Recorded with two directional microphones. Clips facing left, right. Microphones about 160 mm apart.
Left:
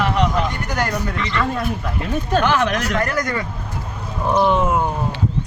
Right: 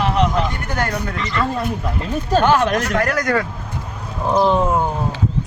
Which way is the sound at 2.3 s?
50° right (ahead or behind).